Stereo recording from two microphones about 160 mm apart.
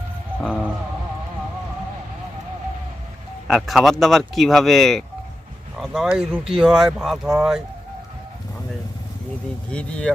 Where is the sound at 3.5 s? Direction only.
Centre (ahead or behind).